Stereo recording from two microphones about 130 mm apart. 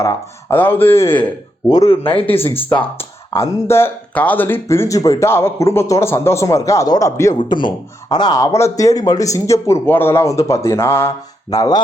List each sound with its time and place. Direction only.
0.0 s speech: 20° left (ahead or behind)
2.0 s speech: 45° left (ahead or behind)
3.0 s speech: 20° left (ahead or behind)
7.3 s speech: 35° left (ahead or behind)